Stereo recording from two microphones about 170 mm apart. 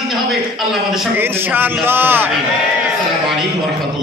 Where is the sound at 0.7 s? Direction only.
Centre (ahead or behind).